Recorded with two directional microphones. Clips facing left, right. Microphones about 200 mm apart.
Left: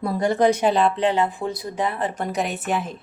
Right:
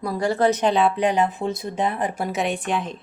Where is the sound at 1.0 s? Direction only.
15° right (ahead or behind).